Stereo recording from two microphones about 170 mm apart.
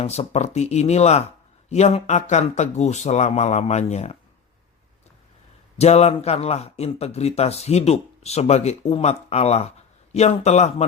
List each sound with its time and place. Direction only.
0.0 s a man's voice: 40° left (ahead or behind)
5.8 s a man's voice: 40° left (ahead or behind)